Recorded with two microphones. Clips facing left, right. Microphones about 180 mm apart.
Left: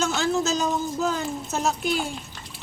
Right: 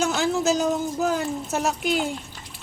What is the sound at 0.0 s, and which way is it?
Speech, 10° right (ahead or behind).